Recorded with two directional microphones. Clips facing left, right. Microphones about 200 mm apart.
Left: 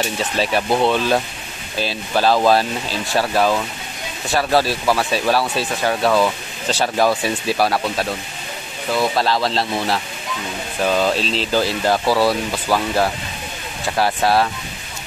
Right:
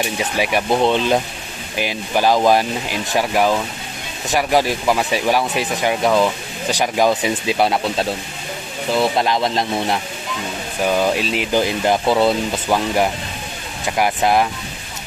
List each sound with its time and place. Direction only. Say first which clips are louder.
0.0 s speech: even; 15° right (ahead or behind)